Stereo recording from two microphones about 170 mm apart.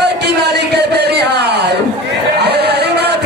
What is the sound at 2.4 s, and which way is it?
Music, 75° right (ahead or behind).